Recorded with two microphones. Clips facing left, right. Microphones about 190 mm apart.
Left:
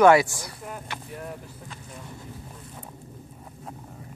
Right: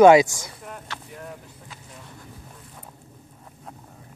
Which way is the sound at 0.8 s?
15° left (ahead or behind).